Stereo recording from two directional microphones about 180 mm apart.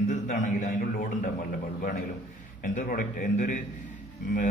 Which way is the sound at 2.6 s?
50° left (ahead or behind).